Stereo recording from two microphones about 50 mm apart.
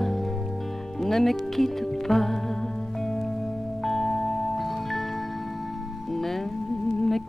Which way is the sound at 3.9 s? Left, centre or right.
Centre.